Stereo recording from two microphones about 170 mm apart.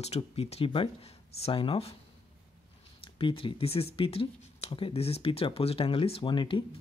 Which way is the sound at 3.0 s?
30° left (ahead or behind).